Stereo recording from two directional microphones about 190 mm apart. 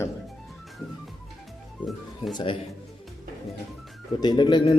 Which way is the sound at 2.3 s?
25° left (ahead or behind).